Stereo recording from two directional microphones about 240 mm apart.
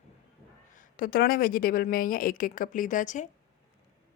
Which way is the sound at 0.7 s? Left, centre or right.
Left.